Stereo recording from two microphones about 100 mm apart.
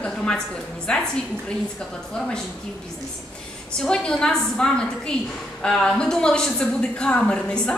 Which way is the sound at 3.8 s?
5° left (ahead or behind).